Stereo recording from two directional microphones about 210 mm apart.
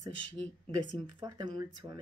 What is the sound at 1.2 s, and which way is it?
Speech, 20° right (ahead or behind).